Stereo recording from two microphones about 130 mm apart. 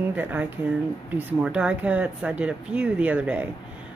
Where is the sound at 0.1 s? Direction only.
15° right (ahead or behind).